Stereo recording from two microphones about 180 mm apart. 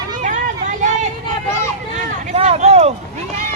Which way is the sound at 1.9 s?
40° right (ahead or behind).